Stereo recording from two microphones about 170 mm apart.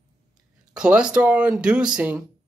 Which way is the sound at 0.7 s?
5° right (ahead or behind).